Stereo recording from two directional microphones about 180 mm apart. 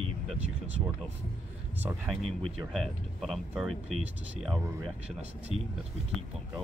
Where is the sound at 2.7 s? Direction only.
Centre (ahead or behind).